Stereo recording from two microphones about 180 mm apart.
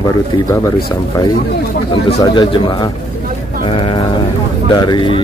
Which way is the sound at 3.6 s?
30° left (ahead or behind).